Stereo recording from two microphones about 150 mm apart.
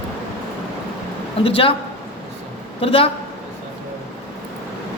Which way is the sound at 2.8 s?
40° left (ahead or behind).